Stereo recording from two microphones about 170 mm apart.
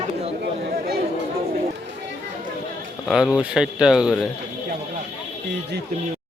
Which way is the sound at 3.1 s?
Centre (ahead or behind).